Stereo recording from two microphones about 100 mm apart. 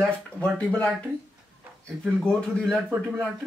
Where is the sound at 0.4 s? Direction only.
10° left (ahead or behind).